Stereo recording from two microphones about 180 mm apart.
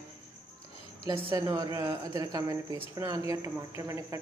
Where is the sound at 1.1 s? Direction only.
20° right (ahead or behind).